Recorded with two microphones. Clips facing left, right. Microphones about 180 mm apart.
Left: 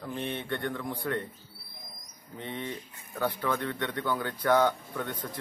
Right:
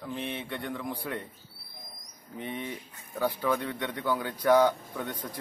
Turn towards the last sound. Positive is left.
turn(degrees=-10)  # may be behind; listen again after turning